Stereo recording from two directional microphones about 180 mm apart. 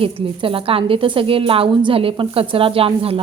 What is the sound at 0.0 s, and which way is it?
A woman's voice, 30° right (ahead or behind).